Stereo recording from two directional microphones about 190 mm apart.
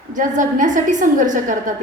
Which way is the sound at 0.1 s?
45° right (ahead or behind).